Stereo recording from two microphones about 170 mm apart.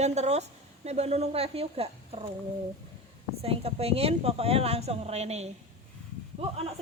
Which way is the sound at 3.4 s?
35° right (ahead or behind).